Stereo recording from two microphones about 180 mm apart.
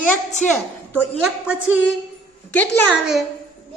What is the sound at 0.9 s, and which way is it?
Speech, 5° right (ahead or behind).